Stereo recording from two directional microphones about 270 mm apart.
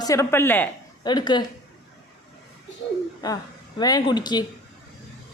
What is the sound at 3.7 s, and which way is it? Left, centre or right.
Speech, centre.